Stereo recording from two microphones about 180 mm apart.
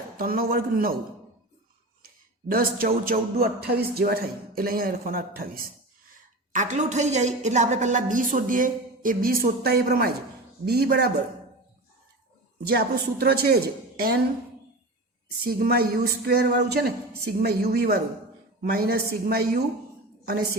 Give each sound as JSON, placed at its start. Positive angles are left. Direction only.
{"t": 0.2, "sound": "speech", "side_deg": -55}
{"t": 2.5, "sound": "speech", "side_deg": -55}
{"t": 12.6, "sound": "speech", "side_deg": -60}
{"t": 15.4, "sound": "a woman's voice", "side_deg": -60}